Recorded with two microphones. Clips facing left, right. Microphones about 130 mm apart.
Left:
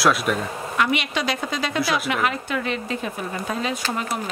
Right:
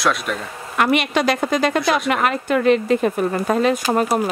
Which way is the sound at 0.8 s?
55° right (ahead or behind).